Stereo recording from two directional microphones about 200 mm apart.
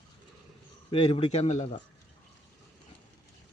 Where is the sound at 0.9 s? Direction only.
25° left (ahead or behind).